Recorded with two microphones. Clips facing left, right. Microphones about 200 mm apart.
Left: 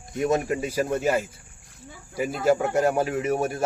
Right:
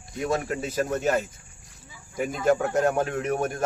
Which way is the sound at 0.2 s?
20° left (ahead or behind).